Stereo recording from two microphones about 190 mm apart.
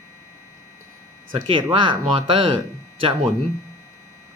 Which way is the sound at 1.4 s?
25° right (ahead or behind).